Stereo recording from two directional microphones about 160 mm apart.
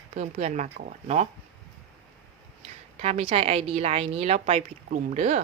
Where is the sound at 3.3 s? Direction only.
40° right (ahead or behind).